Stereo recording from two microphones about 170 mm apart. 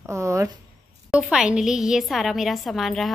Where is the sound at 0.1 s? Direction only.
15° right (ahead or behind).